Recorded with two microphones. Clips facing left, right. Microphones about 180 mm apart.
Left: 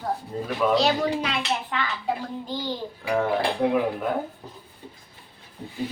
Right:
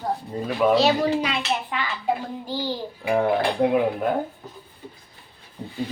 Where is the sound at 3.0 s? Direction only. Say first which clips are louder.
Right 3 dB; 20° right (ahead or behind).